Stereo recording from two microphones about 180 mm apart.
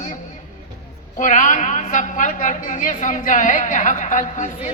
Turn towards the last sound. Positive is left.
turn(degrees=40)  # may be behind; listen again after turning